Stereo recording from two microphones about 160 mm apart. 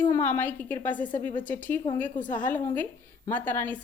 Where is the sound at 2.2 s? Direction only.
55° left (ahead or behind).